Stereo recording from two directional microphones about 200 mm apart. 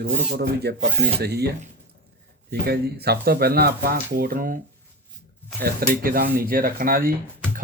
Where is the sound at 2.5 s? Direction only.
55° right (ahead or behind).